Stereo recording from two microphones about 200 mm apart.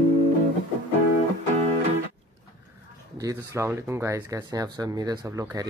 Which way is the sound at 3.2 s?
15° right (ahead or behind).